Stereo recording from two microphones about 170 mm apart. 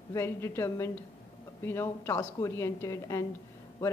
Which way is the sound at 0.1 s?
15° left (ahead or behind).